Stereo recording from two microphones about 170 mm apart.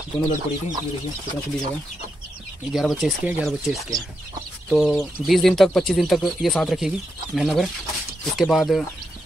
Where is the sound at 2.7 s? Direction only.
Centre (ahead or behind).